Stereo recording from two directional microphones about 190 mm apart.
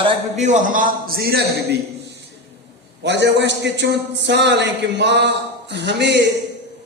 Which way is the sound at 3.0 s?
65° right (ahead or behind).